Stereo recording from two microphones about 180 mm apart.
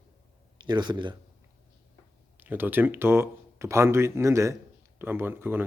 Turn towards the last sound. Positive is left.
turn(degrees=-10)  # may be behind; listen again after turning